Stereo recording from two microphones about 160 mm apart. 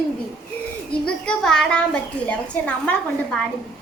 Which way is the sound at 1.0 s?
5° left (ahead or behind).